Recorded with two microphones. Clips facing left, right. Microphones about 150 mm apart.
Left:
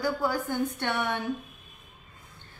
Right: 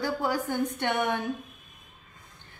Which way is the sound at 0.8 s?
15° right (ahead or behind).